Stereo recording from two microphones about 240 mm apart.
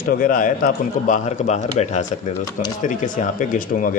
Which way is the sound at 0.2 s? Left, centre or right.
Left.